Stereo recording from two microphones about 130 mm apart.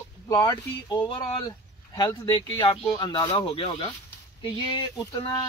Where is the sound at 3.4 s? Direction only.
45° left (ahead or behind).